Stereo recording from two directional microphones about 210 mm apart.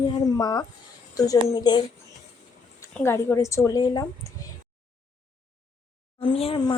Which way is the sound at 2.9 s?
10° left (ahead or behind).